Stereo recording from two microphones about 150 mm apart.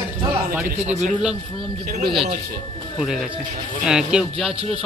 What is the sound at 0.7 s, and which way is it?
Speech, 45° right (ahead or behind).